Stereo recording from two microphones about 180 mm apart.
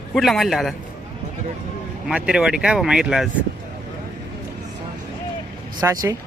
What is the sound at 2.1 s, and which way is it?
Speech, 5° right (ahead or behind).